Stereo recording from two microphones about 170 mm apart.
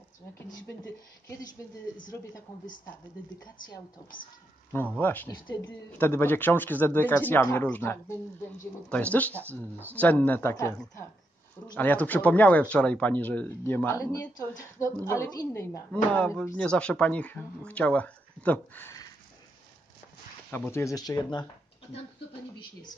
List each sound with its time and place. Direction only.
0.7 s speech: 15° left (ahead or behind)
4.9 s speech: 10° left (ahead or behind)
15.9 s speech: 10° left (ahead or behind)
20.5 s speech: 15° left (ahead or behind)